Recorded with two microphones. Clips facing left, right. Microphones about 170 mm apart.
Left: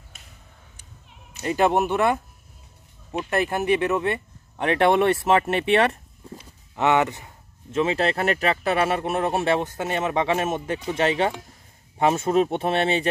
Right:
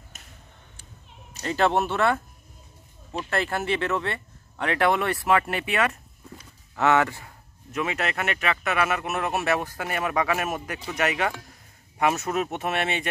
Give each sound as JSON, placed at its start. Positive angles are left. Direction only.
{"t": 1.4, "sound": "a man's voice", "side_deg": 15}
{"t": 6.7, "sound": "speech", "side_deg": 20}